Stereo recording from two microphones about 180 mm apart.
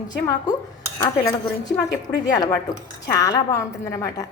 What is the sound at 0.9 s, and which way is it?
Speech, 15° left (ahead or behind).